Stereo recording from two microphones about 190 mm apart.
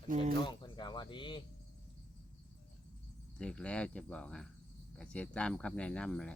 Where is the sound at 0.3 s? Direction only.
25° left (ahead or behind).